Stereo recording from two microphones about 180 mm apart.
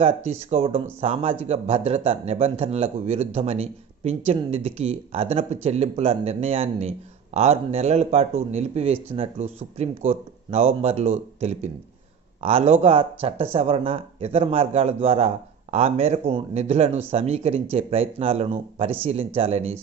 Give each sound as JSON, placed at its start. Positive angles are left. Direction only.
{"t": 0.0, "sound": "speech", "side_deg": -35}